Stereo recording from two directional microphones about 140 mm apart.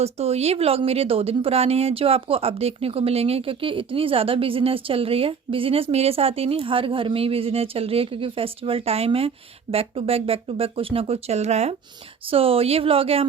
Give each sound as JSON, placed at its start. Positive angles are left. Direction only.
{"t": 0.0, "sound": "speech", "side_deg": -50}